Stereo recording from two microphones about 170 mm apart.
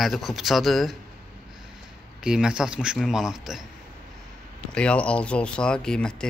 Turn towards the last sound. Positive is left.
turn(degrees=5)  # may be behind; listen again after turning